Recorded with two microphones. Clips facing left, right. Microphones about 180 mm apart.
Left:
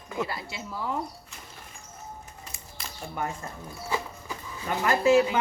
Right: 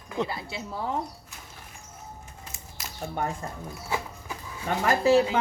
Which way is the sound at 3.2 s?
35° right (ahead or behind).